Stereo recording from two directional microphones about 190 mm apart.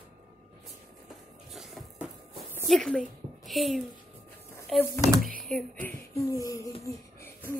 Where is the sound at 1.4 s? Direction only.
Centre (ahead or behind).